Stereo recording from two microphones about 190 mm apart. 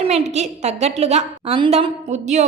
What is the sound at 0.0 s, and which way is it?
A woman's voice, 35° right (ahead or behind).